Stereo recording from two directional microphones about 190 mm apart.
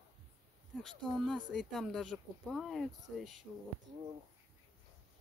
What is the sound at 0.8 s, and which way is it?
Speech, centre (ahead or behind).